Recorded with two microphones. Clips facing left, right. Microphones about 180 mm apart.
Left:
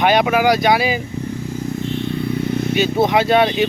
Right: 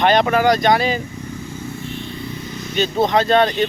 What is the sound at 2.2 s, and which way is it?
Vehicle, 60° left (ahead or behind).